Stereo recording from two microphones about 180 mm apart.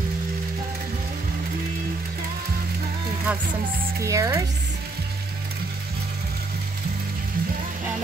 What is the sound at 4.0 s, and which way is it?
Speech, 15° right (ahead or behind).